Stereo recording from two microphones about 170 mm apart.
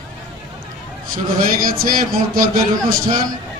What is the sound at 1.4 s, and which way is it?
A man's voice, 55° right (ahead or behind).